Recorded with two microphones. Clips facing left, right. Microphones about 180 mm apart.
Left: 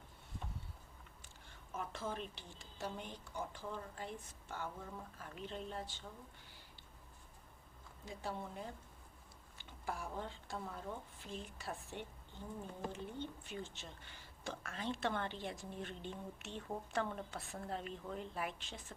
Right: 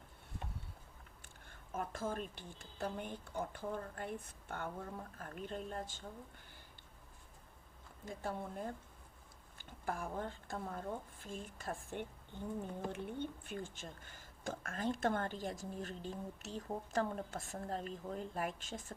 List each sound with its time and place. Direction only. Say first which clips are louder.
1.5 s a woman's voice: right 3 dB; 50° right (ahead or behind)
8.0 s a woman's voice: right 2 dB; 50° right (ahead or behind)